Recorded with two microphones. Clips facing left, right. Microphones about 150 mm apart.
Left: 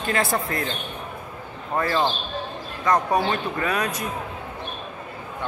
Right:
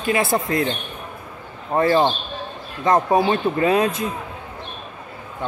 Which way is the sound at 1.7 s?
30° right (ahead or behind).